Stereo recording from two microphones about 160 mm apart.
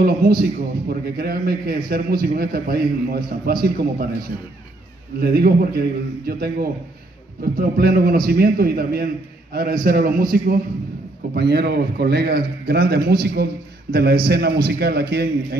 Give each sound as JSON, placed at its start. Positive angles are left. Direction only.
{"t": 0.0, "sound": "a man's voice", "side_deg": -70}
{"t": 5.2, "sound": "a man's voice", "side_deg": -75}
{"t": 11.3, "sound": "a man's voice", "side_deg": -90}
{"t": 13.9, "sound": "a man's voice", "side_deg": -90}